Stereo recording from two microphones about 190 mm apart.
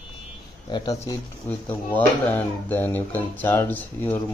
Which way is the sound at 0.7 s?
20° left (ahead or behind).